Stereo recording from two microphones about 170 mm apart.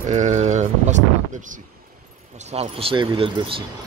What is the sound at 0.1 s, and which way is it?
Speech, 45° right (ahead or behind).